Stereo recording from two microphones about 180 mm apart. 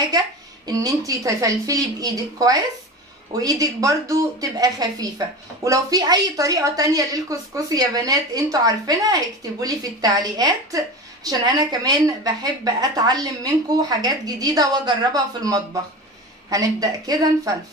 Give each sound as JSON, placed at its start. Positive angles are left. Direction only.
{"t": 0.7, "sound": "a woman's voice", "side_deg": -20}